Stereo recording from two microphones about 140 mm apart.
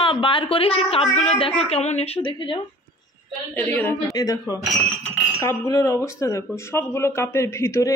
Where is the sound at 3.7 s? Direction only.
15° left (ahead or behind).